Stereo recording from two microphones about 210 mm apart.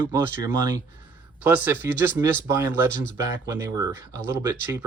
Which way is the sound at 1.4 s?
10° right (ahead or behind).